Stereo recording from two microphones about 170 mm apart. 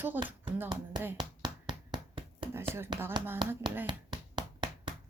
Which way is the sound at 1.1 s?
25° right (ahead or behind).